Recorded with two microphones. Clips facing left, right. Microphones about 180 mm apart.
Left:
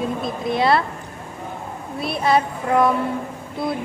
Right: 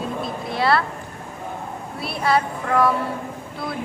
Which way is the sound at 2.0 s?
20° left (ahead or behind).